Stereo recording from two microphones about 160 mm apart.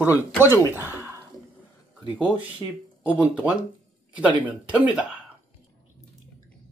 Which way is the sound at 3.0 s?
10° right (ahead or behind).